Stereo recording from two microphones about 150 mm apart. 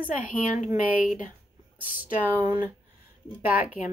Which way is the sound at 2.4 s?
15° right (ahead or behind).